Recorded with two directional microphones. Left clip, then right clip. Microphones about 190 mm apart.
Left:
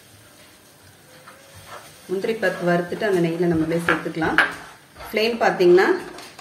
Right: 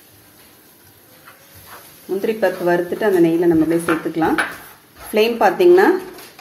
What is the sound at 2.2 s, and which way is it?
Speech, 45° right (ahead or behind).